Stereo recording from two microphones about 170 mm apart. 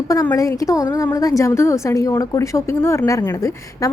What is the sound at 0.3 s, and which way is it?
A woman's voice, 20° left (ahead or behind).